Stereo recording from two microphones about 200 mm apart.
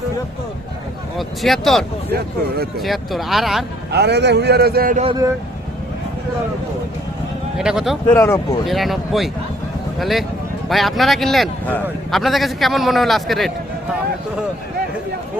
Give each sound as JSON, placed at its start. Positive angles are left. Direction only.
{"t": 1.4, "sound": "a man's voice", "side_deg": 0}
{"t": 3.9, "sound": "a man's voice", "side_deg": -55}
{"t": 7.6, "sound": "a man's voice", "side_deg": -5}
{"t": 8.0, "sound": "speech", "side_deg": 10}
{"t": 8.6, "sound": "a man's voice", "side_deg": 0}